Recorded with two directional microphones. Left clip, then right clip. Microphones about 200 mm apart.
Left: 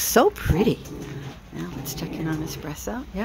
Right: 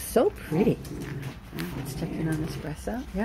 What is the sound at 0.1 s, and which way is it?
Speech, 20° left (ahead or behind).